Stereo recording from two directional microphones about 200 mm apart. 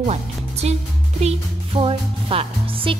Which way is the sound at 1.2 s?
30° right (ahead or behind).